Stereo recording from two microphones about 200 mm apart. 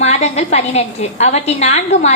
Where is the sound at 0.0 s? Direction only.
35° left (ahead or behind).